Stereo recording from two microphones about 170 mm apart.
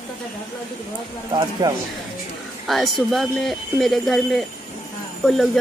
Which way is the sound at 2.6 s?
Centre (ahead or behind).